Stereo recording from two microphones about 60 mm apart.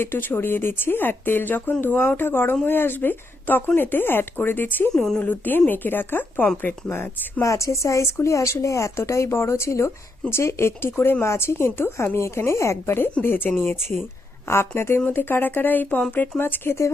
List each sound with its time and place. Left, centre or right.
0.0 s speech: left
6.9 s speech: left
7.4 s a woman's voice: left
16.4 s speech: left